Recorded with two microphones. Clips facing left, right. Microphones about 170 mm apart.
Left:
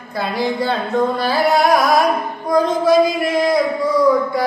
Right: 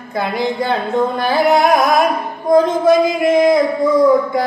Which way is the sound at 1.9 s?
20° right (ahead or behind).